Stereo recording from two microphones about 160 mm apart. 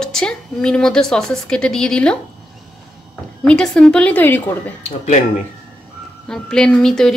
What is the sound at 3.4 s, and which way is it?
A woman's voice, 5° left (ahead or behind).